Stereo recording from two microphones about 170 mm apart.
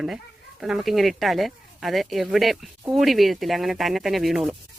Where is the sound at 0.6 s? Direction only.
Centre (ahead or behind).